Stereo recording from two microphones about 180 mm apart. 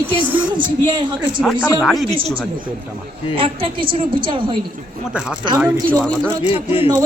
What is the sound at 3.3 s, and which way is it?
A woman's voice, 30° right (ahead or behind).